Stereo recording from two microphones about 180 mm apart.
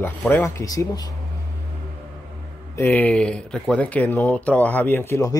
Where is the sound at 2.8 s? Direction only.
10° left (ahead or behind).